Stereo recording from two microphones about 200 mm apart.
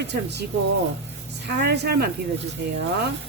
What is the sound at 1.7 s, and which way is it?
Speech, 55° right (ahead or behind).